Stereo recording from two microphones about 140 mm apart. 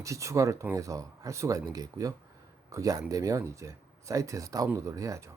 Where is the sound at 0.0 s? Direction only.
20° right (ahead or behind).